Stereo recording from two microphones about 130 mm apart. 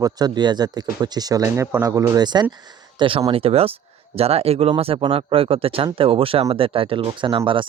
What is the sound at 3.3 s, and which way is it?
Speech, 50° right (ahead or behind).